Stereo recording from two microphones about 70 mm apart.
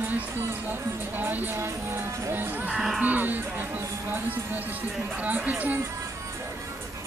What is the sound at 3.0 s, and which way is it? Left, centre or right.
Music, right.